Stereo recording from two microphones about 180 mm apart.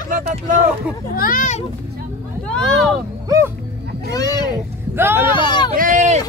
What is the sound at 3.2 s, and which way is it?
Dog, 15° right (ahead or behind).